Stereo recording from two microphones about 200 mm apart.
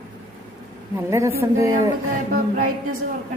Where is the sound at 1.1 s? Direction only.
15° right (ahead or behind).